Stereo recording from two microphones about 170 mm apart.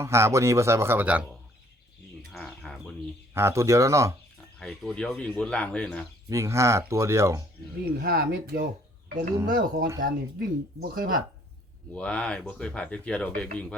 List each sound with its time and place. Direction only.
0.0 s speech: 15° right (ahead or behind)
2.3 s a sound: 5° left (ahead or behind)
3.3 s speech: 15° right (ahead or behind)
4.6 s speech: 5° left (ahead or behind)
6.2 s speech: 15° right (ahead or behind)
7.9 s speech: 65° right (ahead or behind)
11.9 s speech: 5° left (ahead or behind)